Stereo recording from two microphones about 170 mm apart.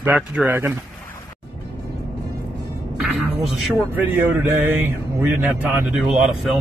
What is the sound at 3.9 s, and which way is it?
Speech, 10° right (ahead or behind).